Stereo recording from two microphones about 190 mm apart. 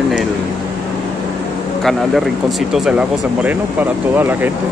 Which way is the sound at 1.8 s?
Centre (ahead or behind).